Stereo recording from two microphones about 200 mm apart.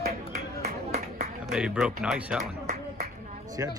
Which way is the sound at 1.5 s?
5° right (ahead or behind).